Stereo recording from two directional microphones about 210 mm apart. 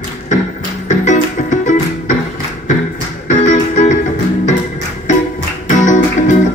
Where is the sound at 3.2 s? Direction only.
35° left (ahead or behind).